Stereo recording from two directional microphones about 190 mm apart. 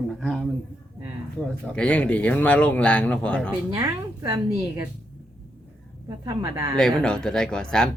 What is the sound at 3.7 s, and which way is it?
A woman's voice, 15° right (ahead or behind).